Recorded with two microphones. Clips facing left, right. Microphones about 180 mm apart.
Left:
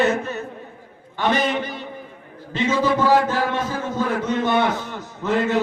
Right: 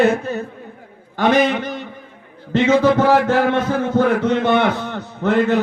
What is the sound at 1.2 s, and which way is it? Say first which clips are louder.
A man's voice: right 5 dB; 50° right (ahead or behind).